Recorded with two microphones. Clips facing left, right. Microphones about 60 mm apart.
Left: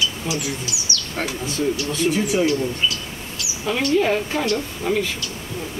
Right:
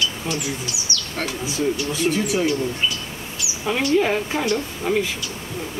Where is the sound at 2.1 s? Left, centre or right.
Centre.